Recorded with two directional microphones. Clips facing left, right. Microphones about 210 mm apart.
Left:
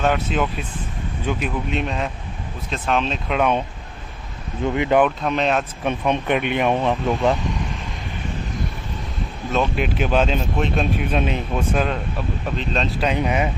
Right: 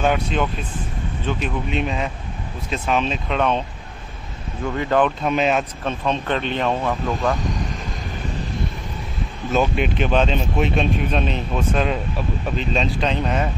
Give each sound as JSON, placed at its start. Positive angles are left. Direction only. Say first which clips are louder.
{"t": 0.0, "sound": "speech", "louder": "even", "side_deg": 0}
{"t": 4.6, "sound": "speech", "louder": "left 2 dB", "side_deg": 15}
{"t": 5.2, "sound": "speech", "louder": "right 1 dB", "side_deg": -5}
{"t": 5.9, "sound": "speech", "louder": "left 4 dB", "side_deg": 15}
{"t": 9.5, "sound": "speech", "louder": "right 2 dB", "side_deg": 0}
{"t": 13.1, "sound": "speech", "louder": "left 1 dB", "side_deg": 10}